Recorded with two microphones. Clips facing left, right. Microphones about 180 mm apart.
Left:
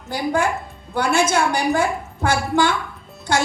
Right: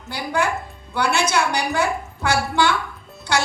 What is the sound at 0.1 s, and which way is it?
A woman's voice, 50° left (ahead or behind).